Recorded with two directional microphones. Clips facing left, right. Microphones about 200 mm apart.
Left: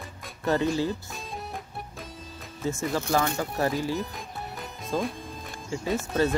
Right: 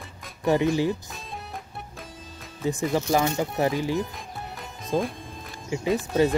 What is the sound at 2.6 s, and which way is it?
Speech, 15° right (ahead or behind).